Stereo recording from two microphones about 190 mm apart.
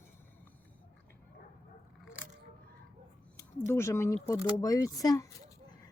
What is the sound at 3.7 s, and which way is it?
Speech, 15° left (ahead or behind).